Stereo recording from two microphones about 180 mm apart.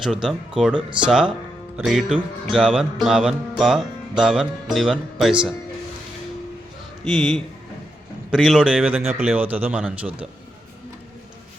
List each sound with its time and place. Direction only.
0.0 s music: centre (ahead or behind)
0.8 s speech: 25° right (ahead or behind)
1.7 s music: centre (ahead or behind)
7.0 s music: centre (ahead or behind)
9.2 s speech: 10° right (ahead or behind)